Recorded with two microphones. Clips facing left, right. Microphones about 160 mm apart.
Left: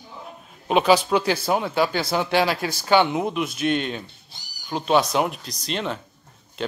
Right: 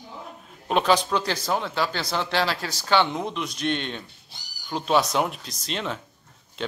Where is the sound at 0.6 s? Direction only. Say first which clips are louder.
Left 3 dB; 5° left (ahead or behind).